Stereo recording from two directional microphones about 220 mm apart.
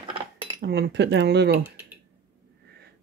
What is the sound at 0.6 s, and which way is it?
Speech, 50° right (ahead or behind).